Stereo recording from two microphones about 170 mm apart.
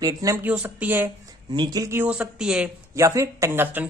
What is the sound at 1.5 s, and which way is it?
Speech, 25° right (ahead or behind).